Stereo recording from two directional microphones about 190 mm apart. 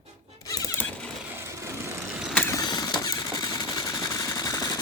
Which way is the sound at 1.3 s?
15° right (ahead or behind).